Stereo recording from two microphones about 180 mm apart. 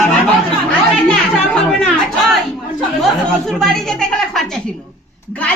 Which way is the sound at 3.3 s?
Centre (ahead or behind).